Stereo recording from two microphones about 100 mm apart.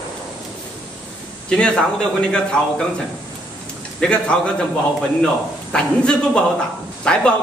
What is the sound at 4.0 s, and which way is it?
A man's voice, 10° left (ahead or behind).